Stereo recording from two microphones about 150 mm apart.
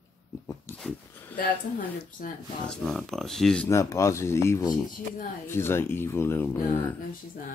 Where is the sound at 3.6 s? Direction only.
20° left (ahead or behind).